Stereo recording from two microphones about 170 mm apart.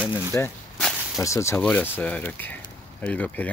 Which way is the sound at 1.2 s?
15° left (ahead or behind).